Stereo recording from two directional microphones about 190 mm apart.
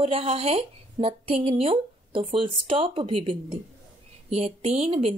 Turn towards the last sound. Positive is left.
turn(degrees=-35)  # may be behind; listen again after turning